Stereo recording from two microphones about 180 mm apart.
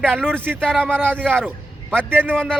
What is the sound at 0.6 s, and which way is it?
Speech, 5° left (ahead or behind).